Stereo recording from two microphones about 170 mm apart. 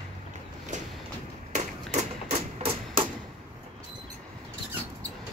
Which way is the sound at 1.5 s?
45° right (ahead or behind).